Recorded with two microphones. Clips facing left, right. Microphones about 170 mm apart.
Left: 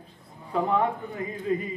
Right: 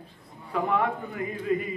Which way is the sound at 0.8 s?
30° left (ahead or behind).